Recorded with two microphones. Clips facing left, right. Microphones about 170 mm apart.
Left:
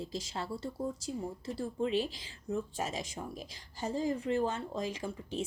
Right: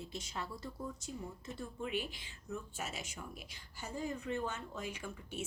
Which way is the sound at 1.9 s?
90° left.